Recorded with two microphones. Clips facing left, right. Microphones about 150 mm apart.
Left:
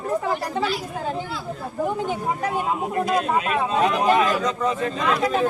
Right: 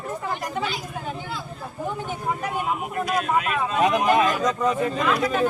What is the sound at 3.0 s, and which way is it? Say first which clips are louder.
A man's voice: even; 25° left (ahead or behind).